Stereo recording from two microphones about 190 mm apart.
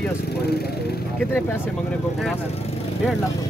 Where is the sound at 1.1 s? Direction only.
10° left (ahead or behind).